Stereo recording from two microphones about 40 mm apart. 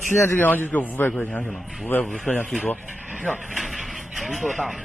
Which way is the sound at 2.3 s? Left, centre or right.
Left.